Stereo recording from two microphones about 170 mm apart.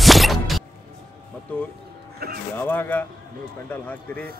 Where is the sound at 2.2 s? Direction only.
60° right (ahead or behind).